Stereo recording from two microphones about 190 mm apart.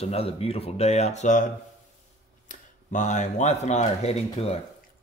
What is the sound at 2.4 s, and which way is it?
Speech, 40° left (ahead or behind).